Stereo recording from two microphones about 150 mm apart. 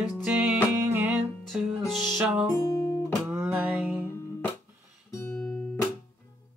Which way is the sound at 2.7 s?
25° left (ahead or behind).